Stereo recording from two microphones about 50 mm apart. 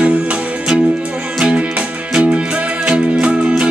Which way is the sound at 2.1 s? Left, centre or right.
Centre.